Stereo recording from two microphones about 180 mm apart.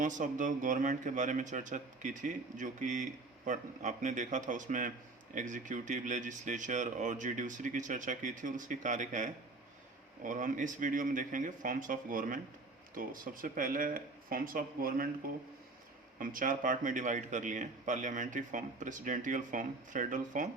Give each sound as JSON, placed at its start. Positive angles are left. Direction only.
{"t": 0.0, "sound": "speech", "side_deg": -45}
{"t": 16.1, "sound": "speech", "side_deg": -50}